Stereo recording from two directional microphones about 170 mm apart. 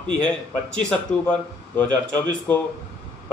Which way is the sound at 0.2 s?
5° left (ahead or behind).